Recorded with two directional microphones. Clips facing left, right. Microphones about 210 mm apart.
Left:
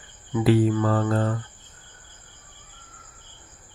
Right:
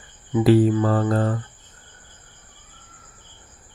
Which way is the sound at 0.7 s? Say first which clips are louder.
Right 2 dB; 30° right (ahead or behind).